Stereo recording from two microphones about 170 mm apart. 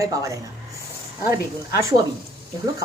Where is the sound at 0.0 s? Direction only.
20° right (ahead or behind).